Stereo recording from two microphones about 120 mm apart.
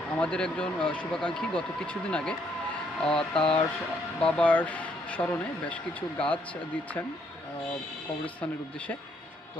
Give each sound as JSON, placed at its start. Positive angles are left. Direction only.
{"t": 0.2, "sound": "speech", "side_deg": 10}
{"t": 3.3, "sound": "speech", "side_deg": 50}
{"t": 4.4, "sound": "speech", "side_deg": 10}